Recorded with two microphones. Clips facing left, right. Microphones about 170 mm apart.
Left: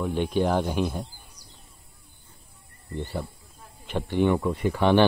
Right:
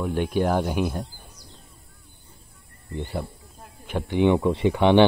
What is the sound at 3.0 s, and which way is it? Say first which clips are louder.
Speech: right 2 dB; 10° right (ahead or behind).